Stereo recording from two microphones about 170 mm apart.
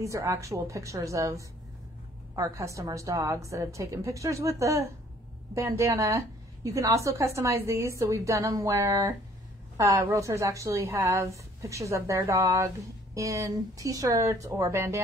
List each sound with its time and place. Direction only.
0.0 s a woman's voice: 15° right (ahead or behind)